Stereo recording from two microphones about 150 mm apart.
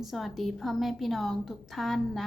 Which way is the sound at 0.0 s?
Centre (ahead or behind).